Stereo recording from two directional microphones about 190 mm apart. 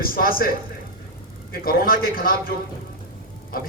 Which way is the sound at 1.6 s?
50° left (ahead or behind).